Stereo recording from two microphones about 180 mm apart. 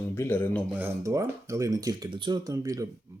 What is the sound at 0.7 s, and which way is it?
Speech, 15° right (ahead or behind).